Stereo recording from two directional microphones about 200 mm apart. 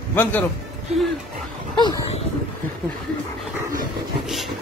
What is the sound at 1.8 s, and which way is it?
Speech, 20° left (ahead or behind).